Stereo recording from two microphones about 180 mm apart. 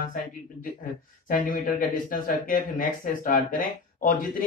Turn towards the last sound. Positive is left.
turn(degrees=50)  # may be behind; listen again after turning